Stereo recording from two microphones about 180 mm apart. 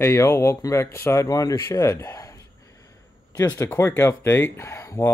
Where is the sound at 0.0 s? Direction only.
15° left (ahead or behind).